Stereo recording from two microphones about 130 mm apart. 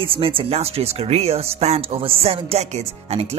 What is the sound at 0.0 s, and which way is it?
Speech, 45° right (ahead or behind).